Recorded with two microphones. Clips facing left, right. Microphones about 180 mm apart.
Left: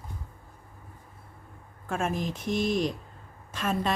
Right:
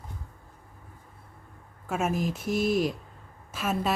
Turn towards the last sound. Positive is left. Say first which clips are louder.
# even
turn(degrees=-5)  # may be behind; listen again after turning